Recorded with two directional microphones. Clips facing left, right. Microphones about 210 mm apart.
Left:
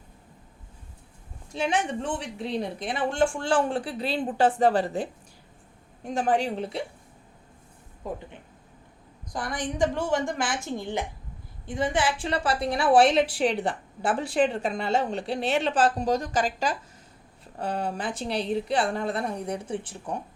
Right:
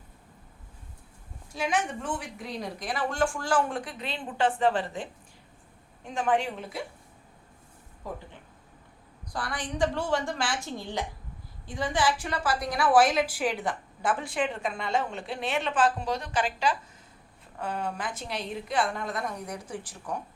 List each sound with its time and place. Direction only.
1.5 s a woman's voice: 30° left (ahead or behind)
9.3 s a woman's voice: 20° left (ahead or behind)
11.6 s a woman's voice: 20° left (ahead or behind)